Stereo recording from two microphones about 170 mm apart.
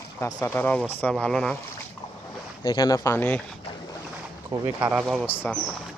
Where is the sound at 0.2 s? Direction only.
20° left (ahead or behind).